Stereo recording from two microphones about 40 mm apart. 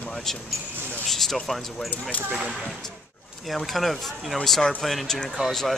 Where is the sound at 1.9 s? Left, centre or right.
Left.